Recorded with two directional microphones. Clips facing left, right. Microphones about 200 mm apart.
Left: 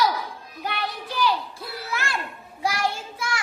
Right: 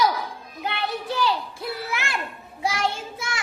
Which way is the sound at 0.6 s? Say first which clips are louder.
Right 3 dB; 25° right (ahead or behind).